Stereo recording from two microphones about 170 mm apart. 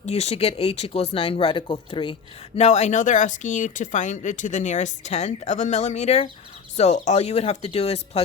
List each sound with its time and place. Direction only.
0.0 s speech: 40° left (ahead or behind)
2.6 s speech: 40° left (ahead or behind)